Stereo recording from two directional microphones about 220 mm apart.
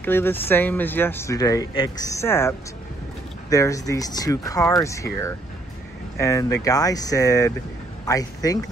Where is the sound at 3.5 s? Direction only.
15° left (ahead or behind).